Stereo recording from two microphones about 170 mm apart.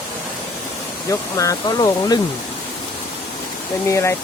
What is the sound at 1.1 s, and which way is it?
Speech, 20° left (ahead or behind).